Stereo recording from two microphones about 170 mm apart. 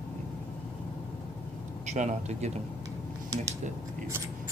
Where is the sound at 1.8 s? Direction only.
45° right (ahead or behind).